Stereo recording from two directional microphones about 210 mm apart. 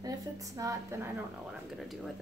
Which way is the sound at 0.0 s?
15° right (ahead or behind).